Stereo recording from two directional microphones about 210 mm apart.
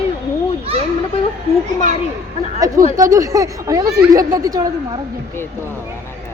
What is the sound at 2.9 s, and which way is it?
A woman's voice, 15° right (ahead or behind).